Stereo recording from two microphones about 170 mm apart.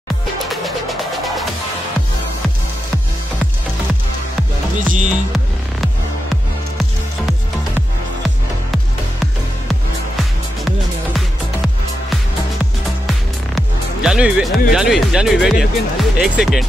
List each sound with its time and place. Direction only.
0.5 s music: centre (ahead or behind)
4.7 s music: 50° right (ahead or behind)
13.6 s music: 5° right (ahead or behind)
14.7 s speech: 5° right (ahead or behind)